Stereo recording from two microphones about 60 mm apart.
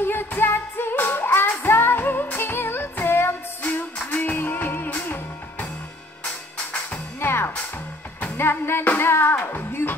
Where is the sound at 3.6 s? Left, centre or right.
Left.